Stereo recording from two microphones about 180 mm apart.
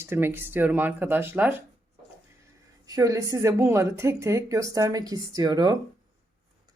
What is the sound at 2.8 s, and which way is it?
Speech, 20° right (ahead or behind).